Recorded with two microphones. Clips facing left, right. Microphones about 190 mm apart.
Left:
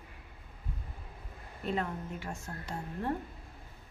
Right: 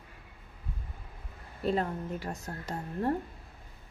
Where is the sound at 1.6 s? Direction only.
35° right (ahead or behind).